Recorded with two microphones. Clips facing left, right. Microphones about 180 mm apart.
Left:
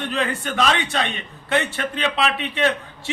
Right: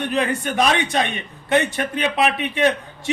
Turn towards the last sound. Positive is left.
turn(degrees=-15)  # may be behind; listen again after turning